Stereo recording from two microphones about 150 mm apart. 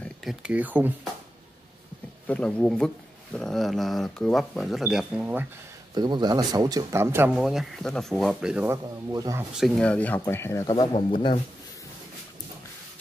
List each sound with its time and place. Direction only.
0.0 s speech: centre (ahead or behind)
2.2 s speech: 10° left (ahead or behind); by 5.5 s 10° right (ahead or behind)
5.9 s a man's voice: 30° right (ahead or behind); by 8.6 s 5° right (ahead or behind)
8.6 s speech: 25° right (ahead or behind)
9.6 s speech: 5° left (ahead or behind)
10.9 s speech: 35° left (ahead or behind)